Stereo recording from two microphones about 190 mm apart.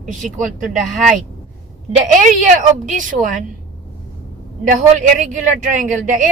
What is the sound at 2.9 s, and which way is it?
Speech, 45° right (ahead or behind).